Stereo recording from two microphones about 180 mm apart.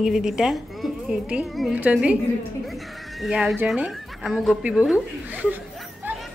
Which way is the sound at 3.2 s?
Centre (ahead or behind).